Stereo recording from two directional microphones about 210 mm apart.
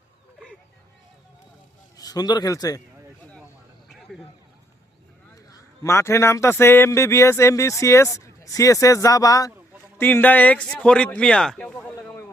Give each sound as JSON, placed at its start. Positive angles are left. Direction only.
{"t": 2.0, "sound": "a man's voice", "side_deg": 20}
{"t": 5.3, "sound": "a man's voice", "side_deg": 15}